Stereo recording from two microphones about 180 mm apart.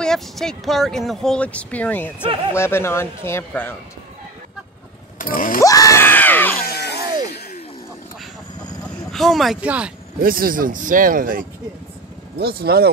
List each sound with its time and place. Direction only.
0.0 s speech: 5° left (ahead or behind)
5.2 s a sound: 50° left (ahead or behind)
5.6 s screaming: 20° left (ahead or behind)
6.6 s music: 60° left (ahead or behind)
9.1 s speech: centre (ahead or behind)
10.2 s speech: 55° right (ahead or behind)
12.4 s speech: 60° right (ahead or behind)